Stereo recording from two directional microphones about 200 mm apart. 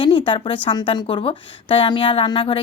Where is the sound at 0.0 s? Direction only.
25° left (ahead or behind).